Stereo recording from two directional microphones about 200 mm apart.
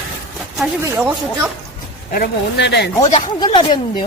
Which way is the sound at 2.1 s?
50° left (ahead or behind).